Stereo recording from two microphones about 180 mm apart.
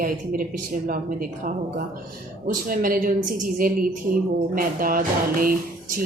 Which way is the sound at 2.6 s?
50° right (ahead or behind).